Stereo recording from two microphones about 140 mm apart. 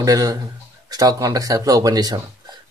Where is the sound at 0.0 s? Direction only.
25° right (ahead or behind).